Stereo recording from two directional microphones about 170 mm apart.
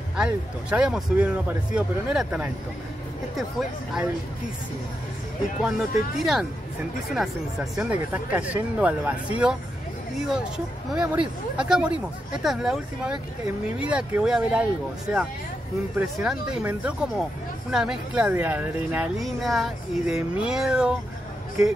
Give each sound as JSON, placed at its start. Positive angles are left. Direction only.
{"t": 0.1, "sound": "speech", "side_deg": -5}
{"t": 5.6, "sound": "speech", "side_deg": 0}
{"t": 16.0, "sound": "speech", "side_deg": -5}